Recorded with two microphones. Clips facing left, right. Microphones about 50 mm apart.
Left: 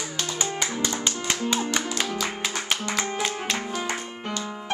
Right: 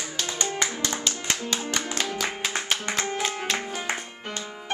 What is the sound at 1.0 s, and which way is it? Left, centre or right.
Music, centre.